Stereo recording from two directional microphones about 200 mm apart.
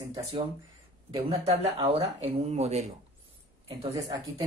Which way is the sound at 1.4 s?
30° right (ahead or behind).